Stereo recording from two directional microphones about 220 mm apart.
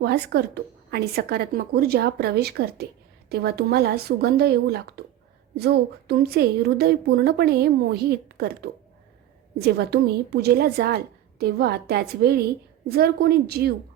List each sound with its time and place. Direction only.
0.0 s a woman's voice: 50° right (ahead or behind)